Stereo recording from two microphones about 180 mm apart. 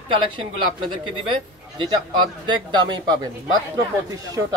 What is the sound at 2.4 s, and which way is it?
Speech, 25° right (ahead or behind).